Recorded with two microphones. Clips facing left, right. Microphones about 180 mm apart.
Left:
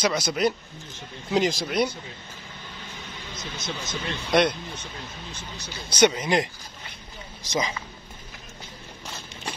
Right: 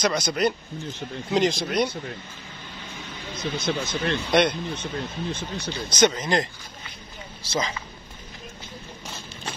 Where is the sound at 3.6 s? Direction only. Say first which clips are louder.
Right 6 dB; 60° right (ahead or behind).